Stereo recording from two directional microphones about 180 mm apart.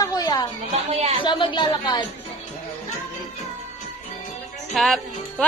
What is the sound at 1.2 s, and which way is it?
Speech, 25° left (ahead or behind).